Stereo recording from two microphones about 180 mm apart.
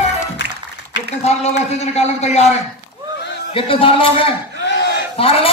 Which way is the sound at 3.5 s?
30° left (ahead or behind).